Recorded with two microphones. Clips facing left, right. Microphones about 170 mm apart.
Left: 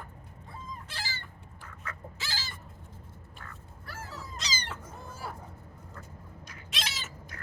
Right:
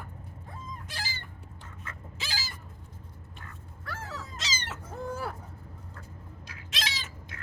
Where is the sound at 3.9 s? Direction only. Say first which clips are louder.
Right 4 dB; 80° right.